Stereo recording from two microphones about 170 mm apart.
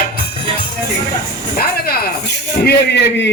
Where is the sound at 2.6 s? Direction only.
80° left.